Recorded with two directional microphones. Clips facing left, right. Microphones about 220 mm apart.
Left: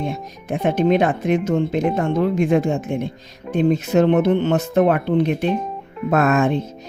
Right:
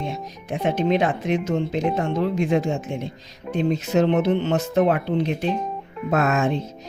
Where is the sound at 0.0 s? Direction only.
55° left (ahead or behind).